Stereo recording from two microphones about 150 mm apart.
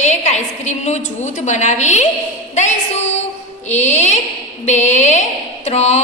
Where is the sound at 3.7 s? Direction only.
50° left (ahead or behind).